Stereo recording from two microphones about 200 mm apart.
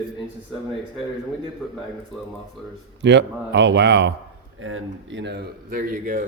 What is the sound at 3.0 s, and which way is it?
Speech, 60° right (ahead or behind).